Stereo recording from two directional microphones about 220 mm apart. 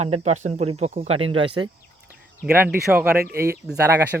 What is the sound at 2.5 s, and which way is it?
Speech, 10° right (ahead or behind).